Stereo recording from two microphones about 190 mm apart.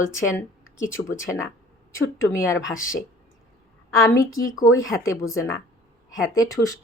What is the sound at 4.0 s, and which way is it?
Speech, 15° left (ahead or behind).